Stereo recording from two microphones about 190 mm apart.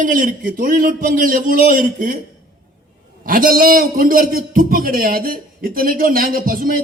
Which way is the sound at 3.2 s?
45° right (ahead or behind).